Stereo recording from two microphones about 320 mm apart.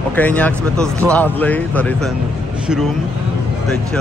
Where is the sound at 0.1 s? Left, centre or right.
Centre.